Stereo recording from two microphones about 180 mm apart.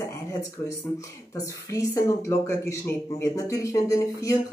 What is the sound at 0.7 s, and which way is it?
Speech, 15° left (ahead or behind).